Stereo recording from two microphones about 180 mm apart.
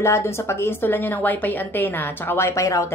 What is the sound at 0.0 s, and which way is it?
A woman's voice, 15° left (ahead or behind).